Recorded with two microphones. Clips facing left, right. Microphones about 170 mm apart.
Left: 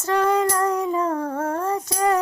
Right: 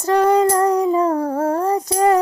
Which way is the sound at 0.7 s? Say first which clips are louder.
Right 6 dB; 35° right (ahead or behind).